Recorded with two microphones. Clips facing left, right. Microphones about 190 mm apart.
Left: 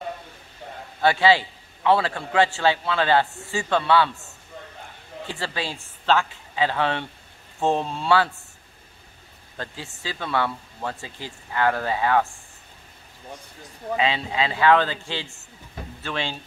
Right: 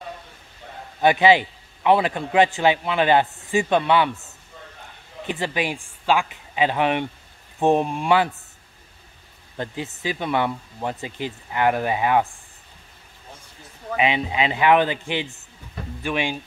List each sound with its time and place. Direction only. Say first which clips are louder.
1.0 s a woman's voice: right 3 dB; 20° right (ahead or behind)
9.6 s speech: right 6 dB; 20° right (ahead or behind)
13.9 s speech: right 2 dB; 20° right (ahead or behind)